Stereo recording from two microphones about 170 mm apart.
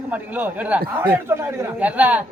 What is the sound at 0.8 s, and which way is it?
Speech, 65° right (ahead or behind).